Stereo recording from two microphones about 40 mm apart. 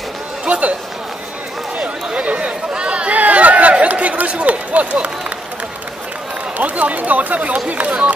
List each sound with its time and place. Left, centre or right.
0.5 s a sound: right
1.8 s chatter: right
6.6 s speech: right